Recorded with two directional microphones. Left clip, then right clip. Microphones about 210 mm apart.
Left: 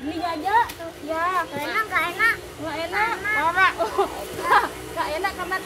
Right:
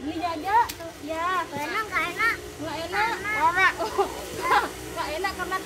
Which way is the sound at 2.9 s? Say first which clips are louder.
Left 2 dB; 5° right (ahead or behind).